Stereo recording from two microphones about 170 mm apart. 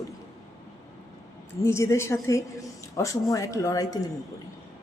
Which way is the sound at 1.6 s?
15° left (ahead or behind).